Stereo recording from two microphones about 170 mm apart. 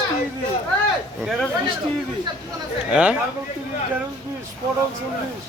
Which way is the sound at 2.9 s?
5° right (ahead or behind).